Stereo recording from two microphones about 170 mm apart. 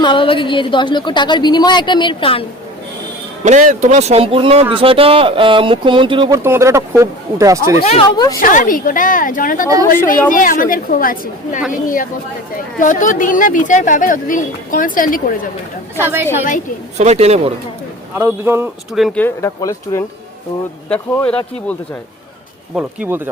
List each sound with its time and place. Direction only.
0.0 s a woman's voice: 30° left (ahead or behind)
3.4 s speech: 50° right (ahead or behind); by 6.4 s 30° right (ahead or behind)
6.4 s speech: 15° right (ahead or behind)
7.8 s speech: 35° left (ahead or behind)
8.4 s speech: 55° left (ahead or behind)
16.0 s speech: 15° right (ahead or behind)
17.0 s speech: 40° right (ahead or behind)
18.2 s speech: 15° right (ahead or behind)
18.9 s speech: centre (ahead or behind)
19.2 s speech: 15° left (ahead or behind)
22.7 s speech: 10° right (ahead or behind)